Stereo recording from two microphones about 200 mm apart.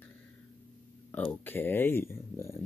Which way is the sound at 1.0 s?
10° left (ahead or behind).